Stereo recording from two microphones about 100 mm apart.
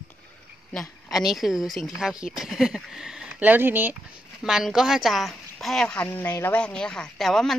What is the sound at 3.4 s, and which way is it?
Speech, 20° right (ahead or behind).